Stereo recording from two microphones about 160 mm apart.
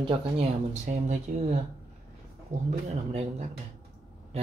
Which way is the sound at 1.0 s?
45° right (ahead or behind).